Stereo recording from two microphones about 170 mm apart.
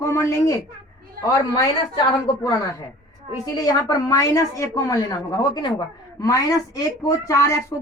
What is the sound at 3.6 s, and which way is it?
Speech, 20° left (ahead or behind).